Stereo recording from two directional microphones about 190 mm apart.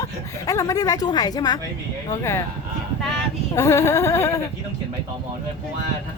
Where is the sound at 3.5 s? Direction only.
15° left (ahead or behind).